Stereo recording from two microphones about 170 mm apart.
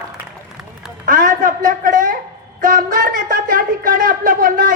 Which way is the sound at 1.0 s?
50° right (ahead or behind).